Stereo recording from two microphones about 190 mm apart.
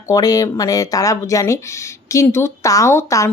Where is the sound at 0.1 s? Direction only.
20° left (ahead or behind).